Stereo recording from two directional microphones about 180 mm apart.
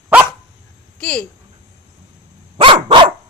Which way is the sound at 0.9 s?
5° left (ahead or behind).